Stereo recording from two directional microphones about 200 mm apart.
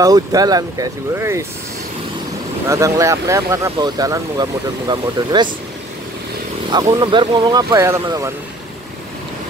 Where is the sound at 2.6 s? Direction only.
15° right (ahead or behind).